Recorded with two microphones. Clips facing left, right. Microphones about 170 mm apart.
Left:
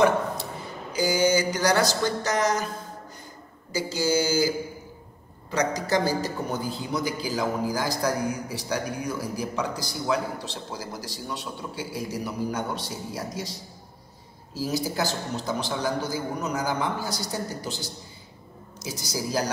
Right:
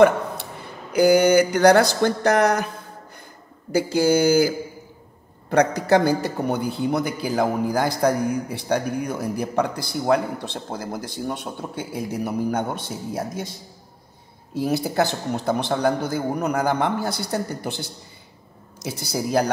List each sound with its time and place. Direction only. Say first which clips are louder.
0.9 s a man's voice: right 8 dB; 60° right (ahead or behind)
3.7 s a man's voice: right 6 dB; 60° right (ahead or behind)
5.5 s a man's voice: right 7 dB; 60° right (ahead or behind)